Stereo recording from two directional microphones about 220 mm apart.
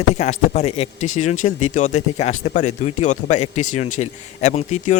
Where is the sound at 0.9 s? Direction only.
65° left (ahead or behind).